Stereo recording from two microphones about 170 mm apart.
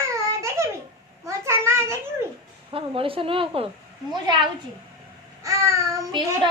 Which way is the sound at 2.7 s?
30° right (ahead or behind).